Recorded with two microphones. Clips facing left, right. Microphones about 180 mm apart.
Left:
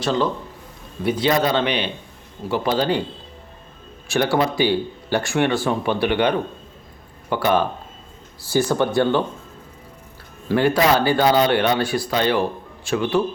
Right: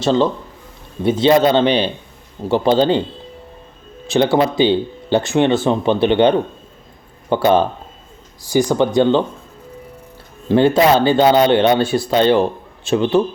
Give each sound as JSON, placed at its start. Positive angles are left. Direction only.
{"t": 0.0, "sound": "speech", "side_deg": -25}
{"t": 4.0, "sound": "speech", "side_deg": -20}
{"t": 8.4, "sound": "speech", "side_deg": -15}
{"t": 10.5, "sound": "speech", "side_deg": -25}